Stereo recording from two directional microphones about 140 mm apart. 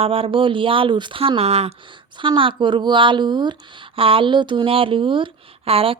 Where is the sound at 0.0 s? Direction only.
40° right (ahead or behind).